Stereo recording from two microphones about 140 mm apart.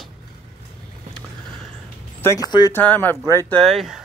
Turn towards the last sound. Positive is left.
turn(degrees=0)  # may be behind; listen again after turning